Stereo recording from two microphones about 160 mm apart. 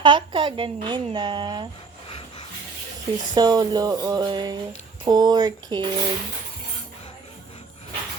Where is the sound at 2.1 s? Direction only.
35° left (ahead or behind).